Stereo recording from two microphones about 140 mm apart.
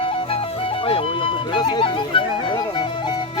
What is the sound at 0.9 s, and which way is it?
Speech, 40° left (ahead or behind).